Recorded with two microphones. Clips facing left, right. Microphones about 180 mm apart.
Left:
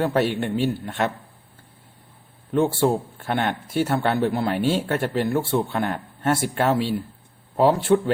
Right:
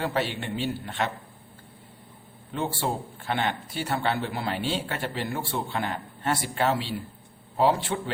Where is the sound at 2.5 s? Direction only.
50° left (ahead or behind).